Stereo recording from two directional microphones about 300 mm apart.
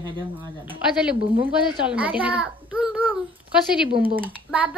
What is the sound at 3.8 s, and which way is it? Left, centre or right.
Speech, centre.